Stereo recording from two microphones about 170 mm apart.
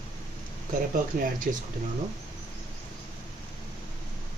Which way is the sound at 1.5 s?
50° right (ahead or behind).